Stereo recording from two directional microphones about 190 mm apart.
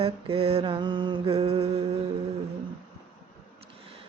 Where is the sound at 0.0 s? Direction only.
30° right (ahead or behind).